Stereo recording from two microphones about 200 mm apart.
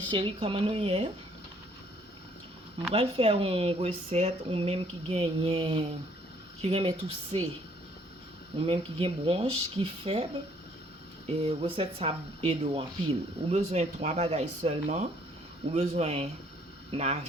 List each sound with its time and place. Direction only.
0.1 s speech: 25° right (ahead or behind)
2.9 s speech: 30° right (ahead or behind)
8.6 s speech: 30° right (ahead or behind)
11.3 s speech: 30° right (ahead or behind)